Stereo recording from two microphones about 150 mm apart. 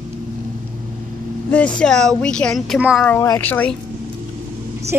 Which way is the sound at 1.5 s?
5° left (ahead or behind).